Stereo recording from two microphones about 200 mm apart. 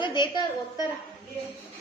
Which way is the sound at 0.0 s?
20° left (ahead or behind).